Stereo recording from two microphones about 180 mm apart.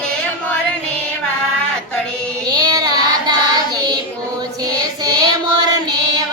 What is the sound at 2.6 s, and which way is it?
Child singing, 20° right (ahead or behind).